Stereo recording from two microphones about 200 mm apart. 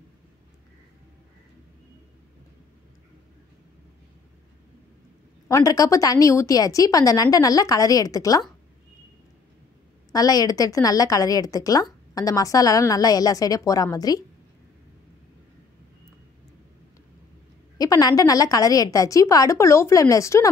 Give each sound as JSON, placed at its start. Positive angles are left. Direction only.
{"t": 5.5, "sound": "a woman's voice", "side_deg": 15}
{"t": 10.1, "sound": "a woman's voice", "side_deg": 20}
{"t": 17.7, "sound": "a woman's voice", "side_deg": 20}